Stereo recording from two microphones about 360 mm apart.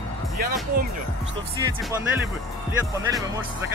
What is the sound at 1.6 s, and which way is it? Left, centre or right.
Speech, centre.